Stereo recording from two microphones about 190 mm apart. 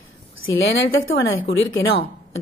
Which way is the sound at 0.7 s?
90° left.